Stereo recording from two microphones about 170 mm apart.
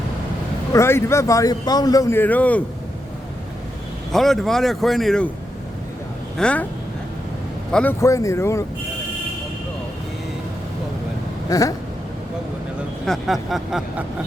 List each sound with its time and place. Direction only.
0.7 s a man's voice: 15° left (ahead or behind)
4.1 s speech: centre (ahead or behind)
6.3 s a man's voice: 5° left (ahead or behind)
7.7 s a man's voice: 5° left (ahead or behind)
8.0 s a man's voice: 20° left (ahead or behind)
11.4 s a sound: 20° left (ahead or behind)
13.1 s speech: centre (ahead or behind)